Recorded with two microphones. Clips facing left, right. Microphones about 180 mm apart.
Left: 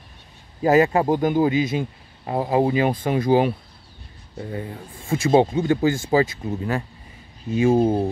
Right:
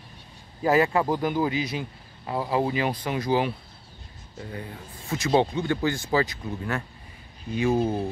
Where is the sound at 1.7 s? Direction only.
45° left (ahead or behind).